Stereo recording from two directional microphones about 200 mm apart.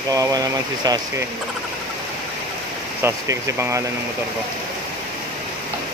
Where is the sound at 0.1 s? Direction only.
20° right (ahead or behind).